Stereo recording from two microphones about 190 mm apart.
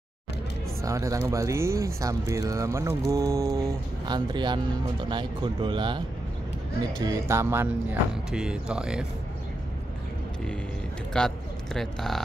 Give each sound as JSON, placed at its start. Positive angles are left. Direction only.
{"t": 0.8, "sound": "speech", "side_deg": -15}
{"t": 11.1, "sound": "speech", "side_deg": 0}